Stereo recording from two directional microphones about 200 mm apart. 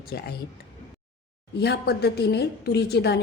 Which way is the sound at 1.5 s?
55° left (ahead or behind).